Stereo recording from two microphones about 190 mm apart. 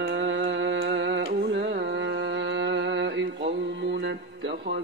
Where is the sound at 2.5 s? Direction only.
70° right (ahead or behind).